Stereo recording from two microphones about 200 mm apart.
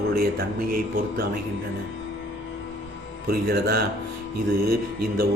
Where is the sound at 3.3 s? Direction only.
50° right (ahead or behind).